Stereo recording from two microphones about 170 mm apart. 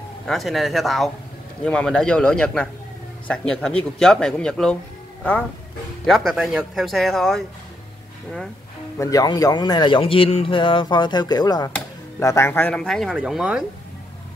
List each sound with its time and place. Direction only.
0.3 s speech: centre (ahead or behind)
6.0 s speech: centre (ahead or behind)
8.9 s speech: 20° left (ahead or behind); by 13.7 s 5° right (ahead or behind)